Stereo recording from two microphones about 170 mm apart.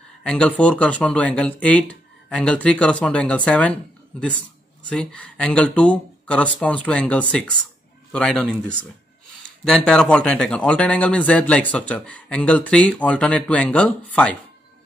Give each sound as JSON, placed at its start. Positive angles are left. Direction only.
{"t": 0.2, "sound": "a man's voice", "side_deg": 5}